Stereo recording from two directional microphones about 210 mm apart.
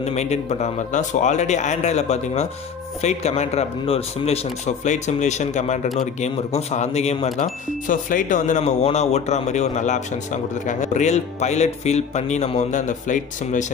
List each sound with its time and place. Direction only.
0.0 s speech: 30° left (ahead or behind)